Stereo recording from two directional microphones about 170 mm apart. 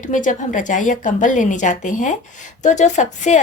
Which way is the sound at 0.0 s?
50° left (ahead or behind).